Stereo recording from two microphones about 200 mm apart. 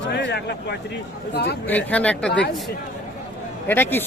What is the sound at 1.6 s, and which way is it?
Speech, 10° left (ahead or behind).